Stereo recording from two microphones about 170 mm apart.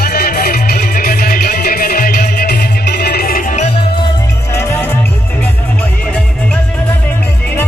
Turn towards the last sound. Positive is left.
turn(degrees=5)  # may be behind; listen again after turning